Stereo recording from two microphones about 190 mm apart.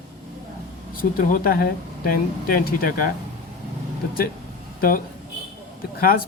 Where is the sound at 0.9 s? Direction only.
50° left (ahead or behind).